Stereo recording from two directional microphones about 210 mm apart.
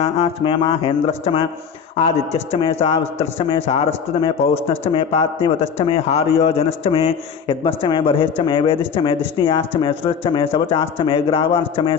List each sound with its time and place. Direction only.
0.0 s a man's voice: 25° left (ahead or behind)